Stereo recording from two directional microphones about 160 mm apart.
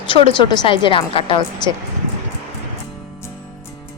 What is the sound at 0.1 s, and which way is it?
A woman's voice, 35° left (ahead or behind).